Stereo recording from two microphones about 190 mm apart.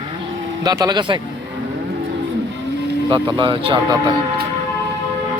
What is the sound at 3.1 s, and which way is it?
Speech, 25° right (ahead or behind).